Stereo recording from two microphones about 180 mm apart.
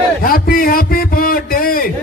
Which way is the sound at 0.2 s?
55° left (ahead or behind).